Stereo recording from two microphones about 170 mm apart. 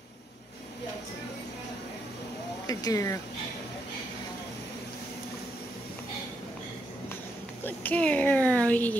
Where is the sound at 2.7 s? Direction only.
20° left (ahead or behind).